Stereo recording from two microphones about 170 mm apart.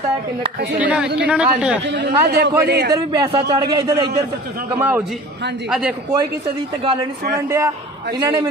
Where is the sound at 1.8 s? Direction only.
90° right.